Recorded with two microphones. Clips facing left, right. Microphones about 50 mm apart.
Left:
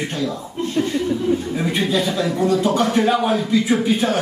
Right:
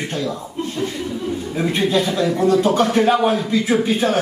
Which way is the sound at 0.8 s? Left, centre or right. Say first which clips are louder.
Left 6 dB; left.